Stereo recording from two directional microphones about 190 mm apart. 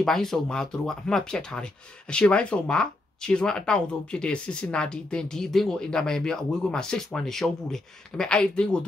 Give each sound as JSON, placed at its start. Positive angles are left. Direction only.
{"t": 0.0, "sound": "speech", "side_deg": 0}